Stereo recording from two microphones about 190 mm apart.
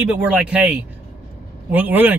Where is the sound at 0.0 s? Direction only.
5° right (ahead or behind).